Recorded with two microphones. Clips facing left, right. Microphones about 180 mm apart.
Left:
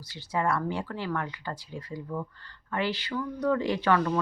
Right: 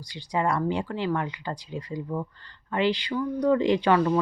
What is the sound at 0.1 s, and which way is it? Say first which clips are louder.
Speech: right 2 dB; 15° right (ahead or behind).